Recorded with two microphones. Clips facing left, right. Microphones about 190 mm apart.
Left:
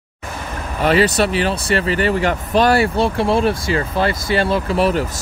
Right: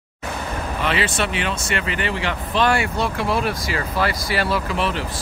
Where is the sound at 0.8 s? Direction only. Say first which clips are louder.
Left 9 dB; 40° left (ahead or behind).